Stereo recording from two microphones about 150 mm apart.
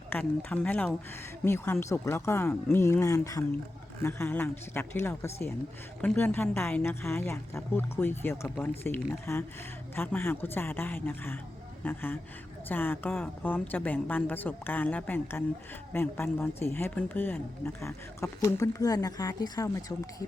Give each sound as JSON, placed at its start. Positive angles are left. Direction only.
{"t": 0.1, "sound": "speech", "side_deg": 10}